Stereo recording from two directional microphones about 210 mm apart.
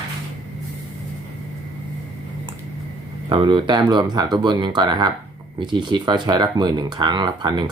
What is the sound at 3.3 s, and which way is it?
Speech, 25° right (ahead or behind).